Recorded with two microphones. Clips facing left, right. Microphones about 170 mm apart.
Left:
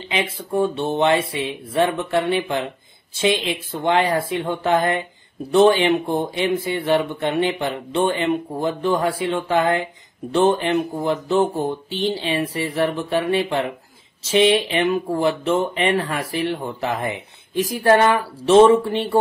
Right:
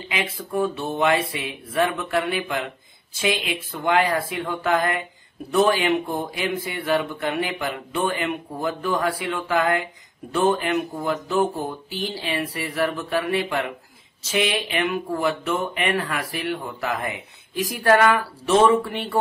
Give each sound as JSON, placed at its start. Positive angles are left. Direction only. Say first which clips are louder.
{"t": 0.1, "sound": "speech", "louder": "left 4 dB", "side_deg": 30}